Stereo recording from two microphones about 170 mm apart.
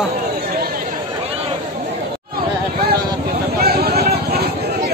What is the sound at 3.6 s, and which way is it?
Vehicle, 65° right (ahead or behind).